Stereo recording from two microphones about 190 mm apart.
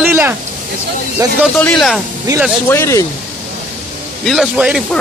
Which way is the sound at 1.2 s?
15° right (ahead or behind).